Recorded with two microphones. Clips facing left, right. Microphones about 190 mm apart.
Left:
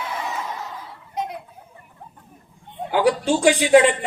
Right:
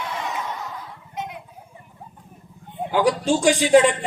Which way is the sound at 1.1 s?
35° left (ahead or behind).